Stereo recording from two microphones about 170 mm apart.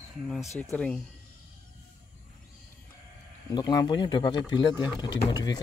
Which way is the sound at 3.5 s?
25° left (ahead or behind).